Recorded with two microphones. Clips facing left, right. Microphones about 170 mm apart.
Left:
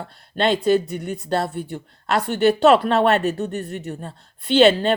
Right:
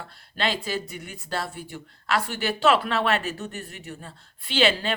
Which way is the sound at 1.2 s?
40° left (ahead or behind).